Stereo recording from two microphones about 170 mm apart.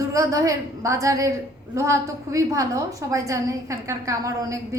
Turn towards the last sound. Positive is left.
turn(degrees=-20)  # may be behind; listen again after turning